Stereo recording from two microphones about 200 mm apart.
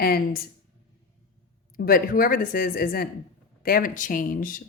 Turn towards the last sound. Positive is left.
turn(degrees=45)  # may be behind; listen again after turning